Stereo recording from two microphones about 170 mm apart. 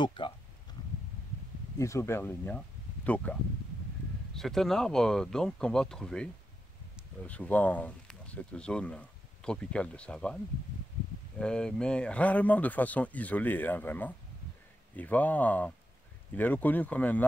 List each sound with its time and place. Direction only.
0.0 s speech: 30° left (ahead or behind)
1.8 s speech: 15° left (ahead or behind)
4.4 s speech: centre (ahead or behind)